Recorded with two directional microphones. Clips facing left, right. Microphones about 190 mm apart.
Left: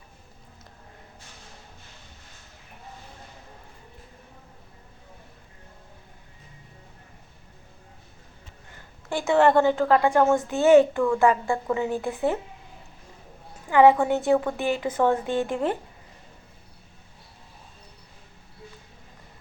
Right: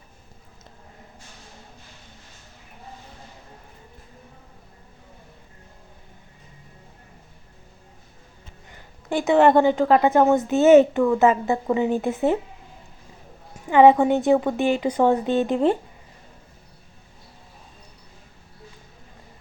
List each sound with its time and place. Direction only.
9.0 s a woman's voice: 20° right (ahead or behind)
13.7 s a woman's voice: 20° right (ahead or behind)